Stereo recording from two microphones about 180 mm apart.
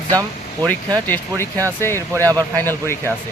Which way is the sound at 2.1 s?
20° right (ahead or behind).